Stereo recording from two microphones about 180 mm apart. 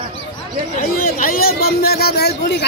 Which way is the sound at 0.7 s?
50° left (ahead or behind).